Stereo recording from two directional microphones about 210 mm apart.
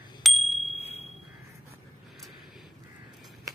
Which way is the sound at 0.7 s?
30° left (ahead or behind).